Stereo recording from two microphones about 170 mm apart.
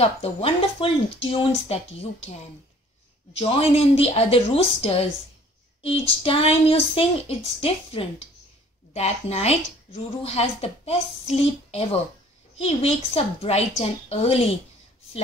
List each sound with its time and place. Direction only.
0.0 s speech: 35° left (ahead or behind)